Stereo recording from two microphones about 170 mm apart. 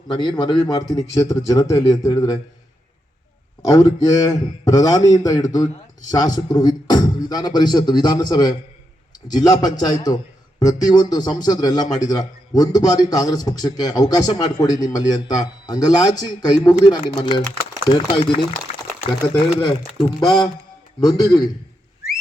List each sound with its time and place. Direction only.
0.1 s a man's voice: 25° left (ahead or behind)
3.6 s a man's voice: 20° left (ahead or behind)
20.1 s a man's voice: 25° left (ahead or behind)